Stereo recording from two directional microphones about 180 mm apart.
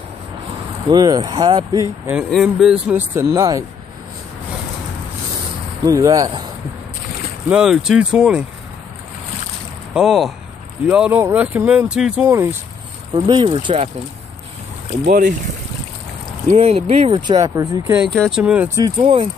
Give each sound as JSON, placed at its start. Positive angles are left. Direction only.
{"t": 0.8, "sound": "speech", "side_deg": -20}
{"t": 2.1, "sound": "speech", "side_deg": 0}
{"t": 3.2, "sound": "speech", "side_deg": -15}
{"t": 5.9, "sound": "speech", "side_deg": -20}
{"t": 7.4, "sound": "speech", "side_deg": -5}
{"t": 9.9, "sound": "speech", "side_deg": 0}
{"t": 13.1, "sound": "speech", "side_deg": -30}
{"t": 14.9, "sound": "speech", "side_deg": -40}
{"t": 16.4, "sound": "speech", "side_deg": -35}
{"t": 17.9, "sound": "speech", "side_deg": 0}
{"t": 18.8, "sound": "speech", "side_deg": -25}